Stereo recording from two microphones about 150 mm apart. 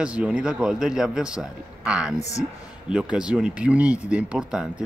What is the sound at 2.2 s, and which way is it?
Speech, 50° left (ahead or behind).